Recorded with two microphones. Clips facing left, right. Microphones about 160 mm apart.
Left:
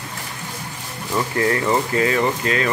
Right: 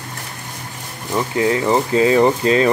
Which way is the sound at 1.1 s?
15° right (ahead or behind).